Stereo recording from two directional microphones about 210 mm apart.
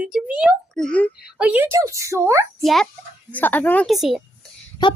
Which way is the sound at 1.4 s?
5° right (ahead or behind).